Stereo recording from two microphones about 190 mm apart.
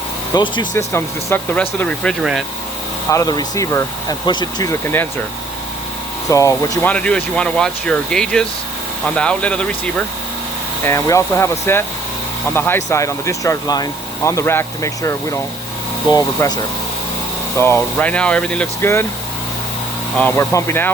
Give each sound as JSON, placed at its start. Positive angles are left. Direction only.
{"t": 0.3, "sound": "speech", "side_deg": 25}
{"t": 3.1, "sound": "speech", "side_deg": 20}
{"t": 6.3, "sound": "speech", "side_deg": 15}
{"t": 17.6, "sound": "speech", "side_deg": 10}
{"t": 20.1, "sound": "speech", "side_deg": 10}